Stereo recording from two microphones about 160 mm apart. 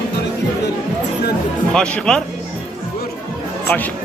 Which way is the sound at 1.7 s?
5° left (ahead or behind).